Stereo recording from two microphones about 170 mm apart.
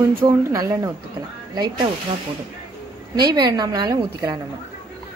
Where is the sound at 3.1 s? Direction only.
25° right (ahead or behind).